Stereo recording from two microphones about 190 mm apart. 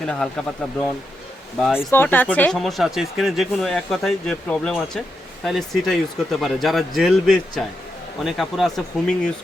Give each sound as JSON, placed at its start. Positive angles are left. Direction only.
{"t": 0.0, "sound": "speech", "side_deg": 5}
{"t": 1.9, "sound": "speech", "side_deg": 10}